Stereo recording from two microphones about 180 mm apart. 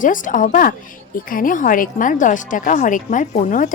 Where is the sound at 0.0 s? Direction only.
45° left (ahead or behind).